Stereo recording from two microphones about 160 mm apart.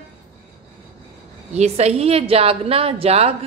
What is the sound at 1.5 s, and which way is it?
A woman's voice, 40° right (ahead or behind).